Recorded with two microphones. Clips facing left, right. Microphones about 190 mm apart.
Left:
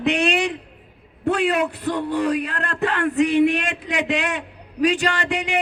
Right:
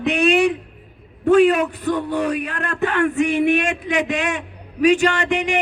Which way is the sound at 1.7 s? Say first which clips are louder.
Right 2 dB; 30° left (ahead or behind).